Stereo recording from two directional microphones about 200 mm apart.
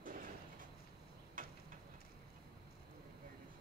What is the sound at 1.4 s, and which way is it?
Tick-tock, 45° right (ahead or behind).